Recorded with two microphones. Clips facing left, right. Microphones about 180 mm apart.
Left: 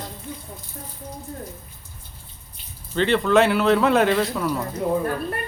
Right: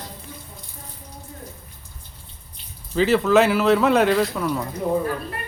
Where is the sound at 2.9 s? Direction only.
5° right (ahead or behind).